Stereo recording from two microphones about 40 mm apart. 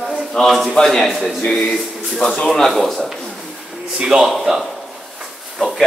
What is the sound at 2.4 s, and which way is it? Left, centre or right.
Speech, centre.